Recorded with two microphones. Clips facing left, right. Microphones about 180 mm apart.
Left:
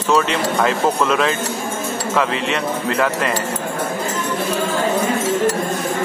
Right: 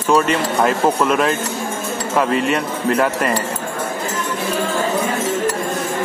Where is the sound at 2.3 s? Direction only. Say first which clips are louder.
Right 3 dB; 90° left.